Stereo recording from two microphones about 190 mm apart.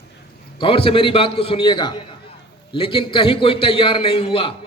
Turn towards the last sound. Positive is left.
turn(degrees=30)  # may be behind; listen again after turning